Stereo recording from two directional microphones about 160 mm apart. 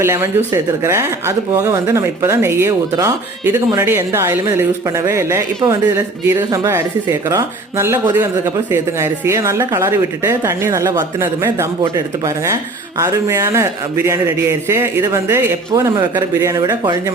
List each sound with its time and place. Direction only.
0.0 s speech: 15° right (ahead or behind)